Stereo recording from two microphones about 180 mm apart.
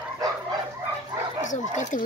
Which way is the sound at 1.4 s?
45° left (ahead or behind).